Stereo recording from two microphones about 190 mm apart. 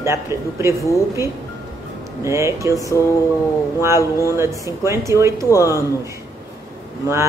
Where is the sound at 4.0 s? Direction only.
15° left (ahead or behind).